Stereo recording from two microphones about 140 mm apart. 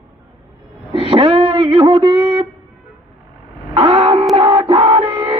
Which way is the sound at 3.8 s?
45° right (ahead or behind).